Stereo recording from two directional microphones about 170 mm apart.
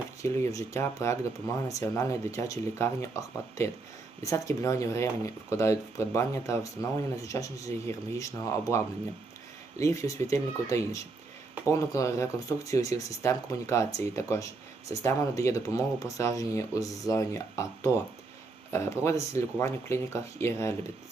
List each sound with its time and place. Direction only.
0.2 s speech: 20° left (ahead or behind)